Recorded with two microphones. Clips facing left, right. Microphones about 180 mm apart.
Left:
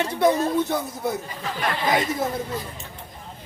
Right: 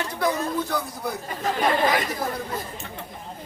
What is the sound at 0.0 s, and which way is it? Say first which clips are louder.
Speech: left 5 dB; 25° left (ahead or behind).